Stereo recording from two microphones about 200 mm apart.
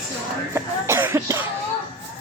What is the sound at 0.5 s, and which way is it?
Cough, 10° right (ahead or behind).